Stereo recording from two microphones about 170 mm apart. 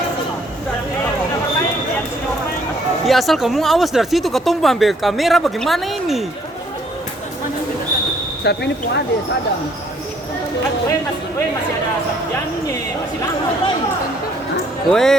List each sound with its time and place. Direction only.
3.1 s speech: centre (ahead or behind)
8.4 s speech: 80° left
14.8 s speech: centre (ahead or behind)